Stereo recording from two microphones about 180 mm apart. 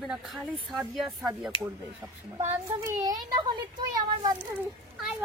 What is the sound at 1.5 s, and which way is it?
Speech, 25° left (ahead or behind).